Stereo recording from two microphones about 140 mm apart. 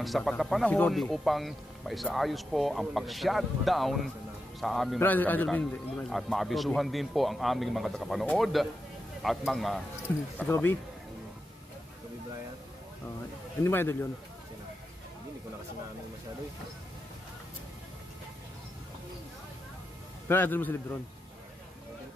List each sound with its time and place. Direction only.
0.0 s a man's voice: centre (ahead or behind)
5.0 s a man's voice: 10° left (ahead or behind)
10.4 s a man's voice: 15° left (ahead or behind)
13.7 s a man's voice: 15° left (ahead or behind)
20.2 s a man's voice: 15° left (ahead or behind)